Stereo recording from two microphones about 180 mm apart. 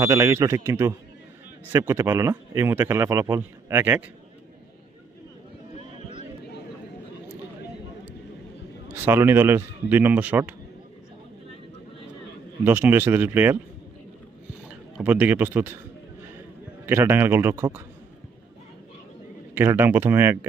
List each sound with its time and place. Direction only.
0.0 s speech: 15° right (ahead or behind)
8.9 s speech: 10° right (ahead or behind)
12.6 s speech: 10° right (ahead or behind)
15.0 s speech: 10° right (ahead or behind)
16.8 s speech: 10° right (ahead or behind)
19.5 s speech: 10° right (ahead or behind)